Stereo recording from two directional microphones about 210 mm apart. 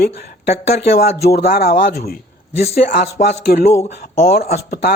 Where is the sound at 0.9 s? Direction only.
50° left (ahead or behind).